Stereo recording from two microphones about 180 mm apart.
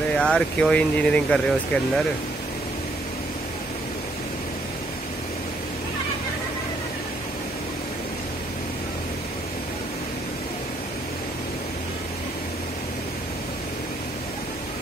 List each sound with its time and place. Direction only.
0.1 s speech: 5° left (ahead or behind)